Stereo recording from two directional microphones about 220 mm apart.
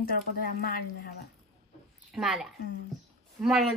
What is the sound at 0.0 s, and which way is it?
Speech, 40° left (ahead or behind).